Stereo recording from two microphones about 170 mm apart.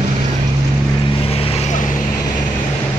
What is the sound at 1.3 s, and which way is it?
Vehicle, 35° left (ahead or behind).